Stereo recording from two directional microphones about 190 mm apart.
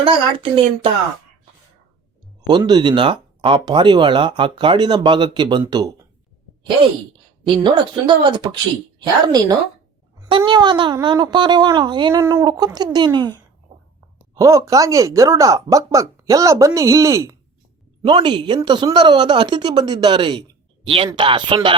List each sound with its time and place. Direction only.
0.0 s speech: 30° right (ahead or behind)
2.5 s speech: 25° right (ahead or behind)
7.4 s speech: 25° right (ahead or behind)
13.7 s whispering: 35° right (ahead or behind)
14.3 s speech: 15° right (ahead or behind)